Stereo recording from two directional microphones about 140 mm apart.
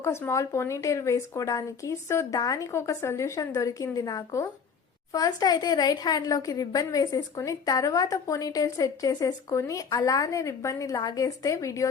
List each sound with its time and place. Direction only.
0.0 s a woman's voice: 20° left (ahead or behind)